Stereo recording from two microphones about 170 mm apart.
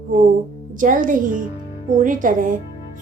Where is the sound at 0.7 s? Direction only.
50° right (ahead or behind).